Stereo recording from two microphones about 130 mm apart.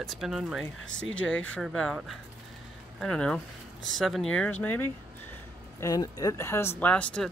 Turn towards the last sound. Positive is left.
turn(degrees=10)  # may be behind; listen again after turning